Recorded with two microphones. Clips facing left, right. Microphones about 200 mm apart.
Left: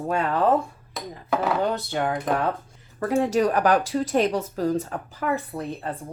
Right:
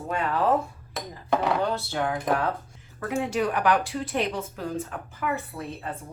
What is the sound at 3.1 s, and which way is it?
Speech, 40° left (ahead or behind).